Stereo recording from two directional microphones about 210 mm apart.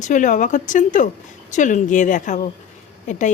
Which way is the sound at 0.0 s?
35° left (ahead or behind).